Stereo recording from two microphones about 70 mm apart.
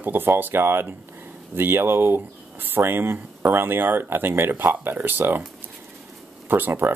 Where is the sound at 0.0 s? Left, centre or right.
Right.